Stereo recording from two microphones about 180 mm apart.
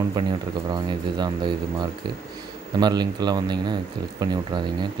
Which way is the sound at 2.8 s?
25° right (ahead or behind).